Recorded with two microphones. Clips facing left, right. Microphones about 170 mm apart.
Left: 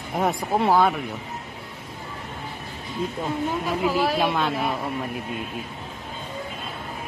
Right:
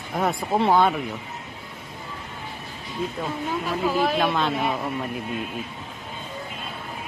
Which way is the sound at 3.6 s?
10° left (ahead or behind).